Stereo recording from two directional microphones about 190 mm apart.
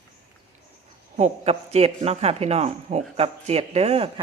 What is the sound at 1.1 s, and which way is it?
Speech, 35° right (ahead or behind).